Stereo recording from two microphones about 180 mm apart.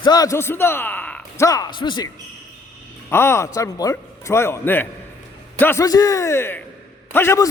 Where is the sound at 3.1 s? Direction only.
15° left (ahead or behind).